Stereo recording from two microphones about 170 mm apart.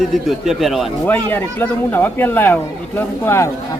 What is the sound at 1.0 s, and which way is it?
Speech, 10° left (ahead or behind).